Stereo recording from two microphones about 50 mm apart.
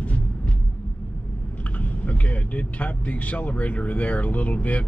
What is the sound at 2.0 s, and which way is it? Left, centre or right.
Speech, left.